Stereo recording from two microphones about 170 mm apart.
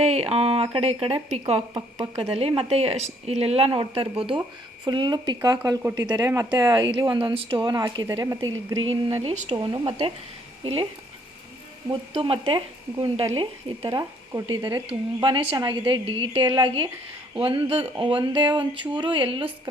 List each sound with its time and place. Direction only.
0.0 s speech: 40° right (ahead or behind); by 8.4 s 20° right (ahead or behind)
9.2 s speech: 40° right (ahead or behind)
9.6 s speech: 25° right (ahead or behind)
11.9 s speech: 30° right (ahead or behind)